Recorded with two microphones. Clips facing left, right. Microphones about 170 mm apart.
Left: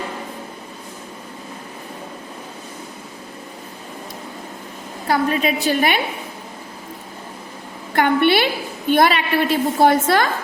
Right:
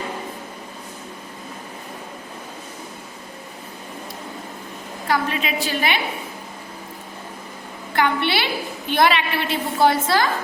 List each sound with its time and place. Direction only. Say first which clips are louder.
5.0 s a woman's voice: left 4 dB; 40° left (ahead or behind)
7.9 s a sound: left 5 dB; 50° left (ahead or behind)
8.9 s a woman's voice: left 3 dB; 45° left (ahead or behind)